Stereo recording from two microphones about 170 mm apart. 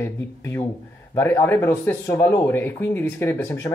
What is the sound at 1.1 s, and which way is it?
Speech, 15° left (ahead or behind).